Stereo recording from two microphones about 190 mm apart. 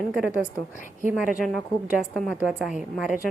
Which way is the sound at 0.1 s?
10° right (ahead or behind).